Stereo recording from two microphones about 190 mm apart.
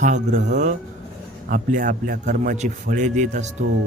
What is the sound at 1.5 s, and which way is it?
Speech, 45° right (ahead or behind).